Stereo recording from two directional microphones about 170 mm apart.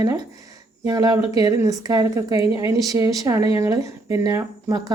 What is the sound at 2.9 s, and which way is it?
A woman's voice, 20° right (ahead or behind).